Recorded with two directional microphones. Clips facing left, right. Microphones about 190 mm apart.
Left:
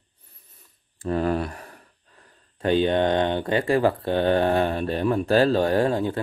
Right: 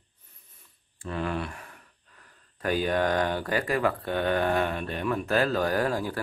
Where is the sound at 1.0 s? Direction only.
40° left (ahead or behind).